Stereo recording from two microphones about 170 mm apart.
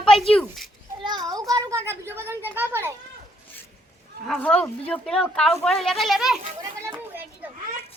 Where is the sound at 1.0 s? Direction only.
25° right (ahead or behind).